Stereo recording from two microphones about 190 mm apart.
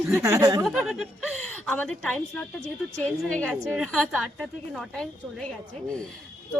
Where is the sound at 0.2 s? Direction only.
15° right (ahead or behind).